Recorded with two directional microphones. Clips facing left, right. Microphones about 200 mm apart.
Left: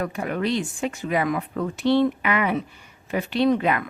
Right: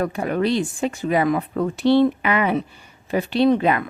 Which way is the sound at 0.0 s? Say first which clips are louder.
Right 4 dB; 35° right (ahead or behind).